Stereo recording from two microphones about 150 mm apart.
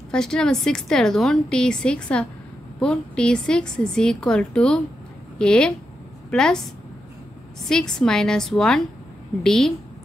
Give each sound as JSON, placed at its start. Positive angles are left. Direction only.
{"t": 0.1, "sound": "a woman's voice", "side_deg": 5}